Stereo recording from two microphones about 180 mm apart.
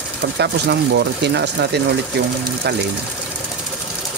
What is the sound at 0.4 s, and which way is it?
Speech, 65° right (ahead or behind).